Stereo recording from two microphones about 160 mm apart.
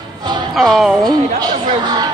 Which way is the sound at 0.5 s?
Centre (ahead or behind).